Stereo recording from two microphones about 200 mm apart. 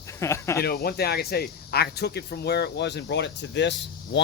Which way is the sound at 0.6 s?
50° left (ahead or behind).